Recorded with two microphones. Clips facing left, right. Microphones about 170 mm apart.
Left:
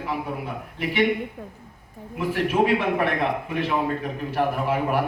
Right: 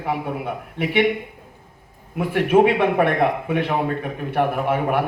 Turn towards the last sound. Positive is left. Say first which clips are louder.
# right 3 dB
turn(degrees=-60)  # may be behind; listen again after turning